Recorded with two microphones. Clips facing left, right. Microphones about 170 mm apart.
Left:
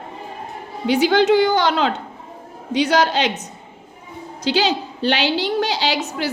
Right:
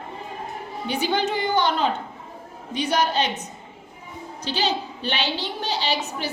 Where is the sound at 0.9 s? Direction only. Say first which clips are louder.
Left 9 dB; 90° left.